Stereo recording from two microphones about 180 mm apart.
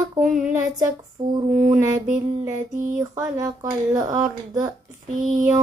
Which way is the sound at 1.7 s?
15° right (ahead or behind).